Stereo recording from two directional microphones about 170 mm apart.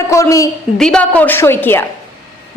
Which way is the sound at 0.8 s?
5° left (ahead or behind).